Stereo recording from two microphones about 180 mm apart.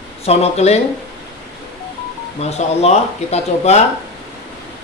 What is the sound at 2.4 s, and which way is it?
Speech, 35° left (ahead or behind).